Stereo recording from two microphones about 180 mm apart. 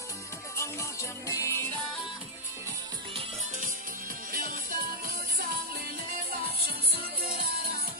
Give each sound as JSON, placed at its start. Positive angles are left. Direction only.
{"t": 0.6, "sound": "music", "side_deg": 15}
{"t": 4.3, "sound": "music", "side_deg": -50}
{"t": 7.0, "sound": "music", "side_deg": -55}